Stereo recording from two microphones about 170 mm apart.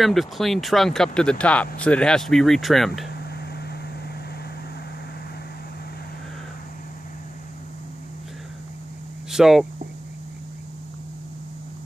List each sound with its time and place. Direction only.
0.0 s speech: centre (ahead or behind)
3.1 s a sound: 70° left (ahead or behind)
9.3 s speech: 5° right (ahead or behind)